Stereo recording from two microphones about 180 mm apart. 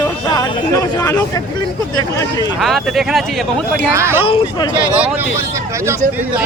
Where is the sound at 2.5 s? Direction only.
Centre (ahead or behind).